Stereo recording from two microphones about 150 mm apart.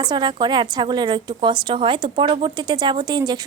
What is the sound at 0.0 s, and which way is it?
Speech, 30° right (ahead or behind).